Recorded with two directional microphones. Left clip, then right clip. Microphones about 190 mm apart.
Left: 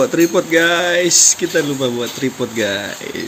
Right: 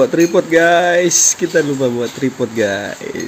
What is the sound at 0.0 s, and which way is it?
Speech, 25° right (ahead or behind).